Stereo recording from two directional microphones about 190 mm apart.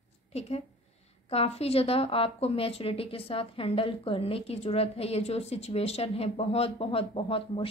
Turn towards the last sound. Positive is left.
turn(degrees=30)  # may be behind; listen again after turning